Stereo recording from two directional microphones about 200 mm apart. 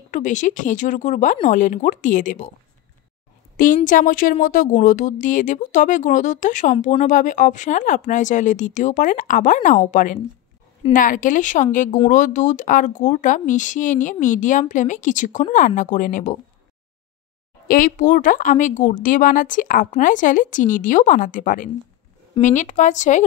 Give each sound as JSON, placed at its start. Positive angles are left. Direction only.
{"t": 0.1, "sound": "speech", "side_deg": 40}
{"t": 3.5, "sound": "speech", "side_deg": 40}
{"t": 17.6, "sound": "speech", "side_deg": 45}